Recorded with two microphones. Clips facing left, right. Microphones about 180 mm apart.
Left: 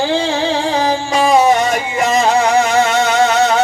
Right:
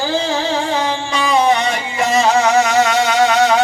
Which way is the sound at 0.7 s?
35° left (ahead or behind).